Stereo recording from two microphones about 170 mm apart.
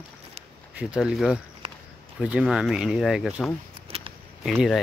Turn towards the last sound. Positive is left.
turn(degrees=0)  # may be behind; listen again after turning